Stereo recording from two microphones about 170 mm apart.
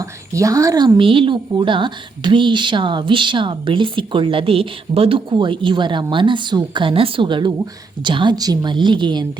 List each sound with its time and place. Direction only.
0.0 s a woman's voice: 20° right (ahead or behind)